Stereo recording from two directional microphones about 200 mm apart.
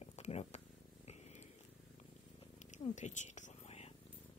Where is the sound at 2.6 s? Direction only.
35° left (ahead or behind).